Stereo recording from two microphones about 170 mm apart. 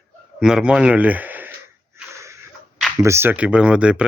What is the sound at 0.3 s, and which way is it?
Speech, 5° right (ahead or behind).